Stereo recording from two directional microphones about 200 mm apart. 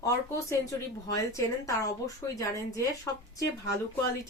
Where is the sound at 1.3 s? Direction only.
15° left (ahead or behind).